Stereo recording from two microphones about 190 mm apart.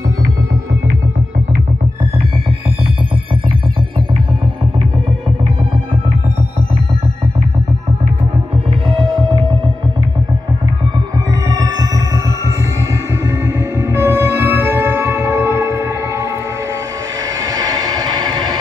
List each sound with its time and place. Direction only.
9.2 s hum: 25° right (ahead or behind)
11.4 s music: 15° right (ahead or behind)
13.9 s music: 15° right (ahead or behind)
17.4 s a sound: 20° right (ahead or behind)